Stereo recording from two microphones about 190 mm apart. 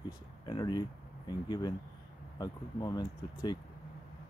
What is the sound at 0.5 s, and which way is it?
Speech, 20° left (ahead or behind).